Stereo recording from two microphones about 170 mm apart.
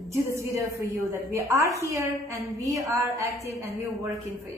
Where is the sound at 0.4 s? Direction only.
15° right (ahead or behind).